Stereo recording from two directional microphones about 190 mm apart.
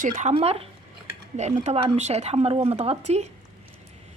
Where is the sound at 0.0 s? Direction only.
40° right (ahead or behind).